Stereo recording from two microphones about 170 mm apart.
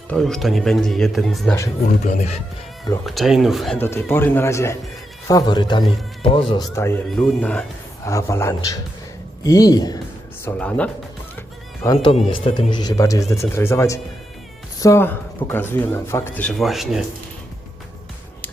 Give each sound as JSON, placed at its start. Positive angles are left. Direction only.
{"t": 0.1, "sound": "a man's voice", "side_deg": 5}
{"t": 2.0, "sound": "speech", "side_deg": 45}
{"t": 3.1, "sound": "a man's voice", "side_deg": 0}
{"t": 3.8, "sound": "speech", "side_deg": 15}
{"t": 6.7, "sound": "speech", "side_deg": 15}
{"t": 10.4, "sound": "speech", "side_deg": 5}
{"t": 12.0, "sound": "speech", "side_deg": 30}